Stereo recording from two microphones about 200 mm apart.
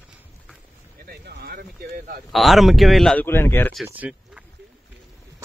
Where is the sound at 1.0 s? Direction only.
55° right (ahead or behind).